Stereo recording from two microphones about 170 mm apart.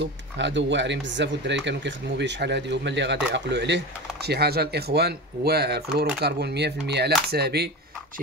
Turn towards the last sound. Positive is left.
turn(degrees=-70)  # may be behind; listen again after turning